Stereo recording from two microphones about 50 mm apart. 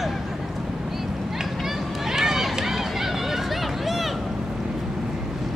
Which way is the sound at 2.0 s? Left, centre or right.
Centre.